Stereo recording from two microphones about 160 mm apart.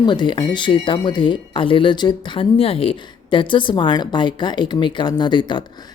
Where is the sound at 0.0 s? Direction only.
30° left (ahead or behind).